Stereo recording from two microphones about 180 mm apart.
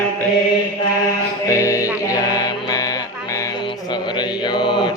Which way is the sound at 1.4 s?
15° left (ahead or behind).